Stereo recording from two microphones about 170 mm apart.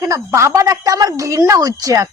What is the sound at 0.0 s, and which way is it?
A woman's voice, 20° right (ahead or behind).